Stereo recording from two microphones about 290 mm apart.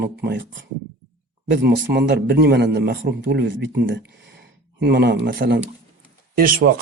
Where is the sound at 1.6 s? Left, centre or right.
Right.